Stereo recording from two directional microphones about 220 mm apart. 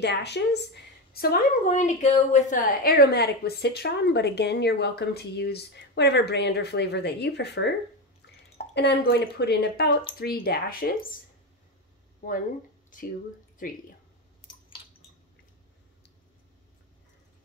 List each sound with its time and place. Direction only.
0.0 s a woman's voice: 50° left (ahead or behind)
1.1 s a woman's voice: 40° left (ahead or behind)
8.7 s a woman's voice: 50° left (ahead or behind)